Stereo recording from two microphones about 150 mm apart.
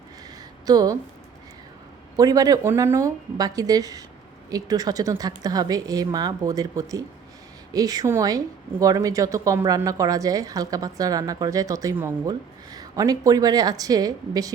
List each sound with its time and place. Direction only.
0.6 s a woman's voice: 25° right (ahead or behind)
2.1 s a woman's voice: 25° right (ahead or behind)